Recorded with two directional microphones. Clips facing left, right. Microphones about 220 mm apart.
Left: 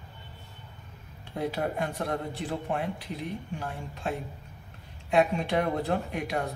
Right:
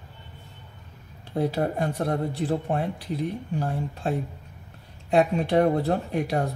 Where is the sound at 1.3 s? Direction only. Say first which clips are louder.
Right 5 dB; 40° right (ahead or behind).